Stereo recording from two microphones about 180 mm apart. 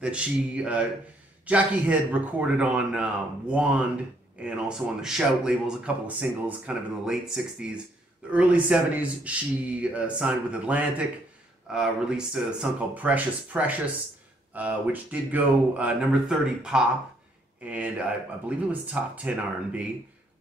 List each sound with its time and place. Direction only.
0.0 s speech: 5° right (ahead or behind)